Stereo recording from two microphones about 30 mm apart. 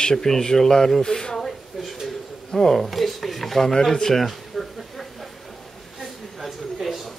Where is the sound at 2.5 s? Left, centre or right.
Centre.